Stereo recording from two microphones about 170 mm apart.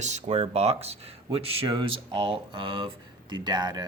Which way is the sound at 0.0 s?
40° right (ahead or behind).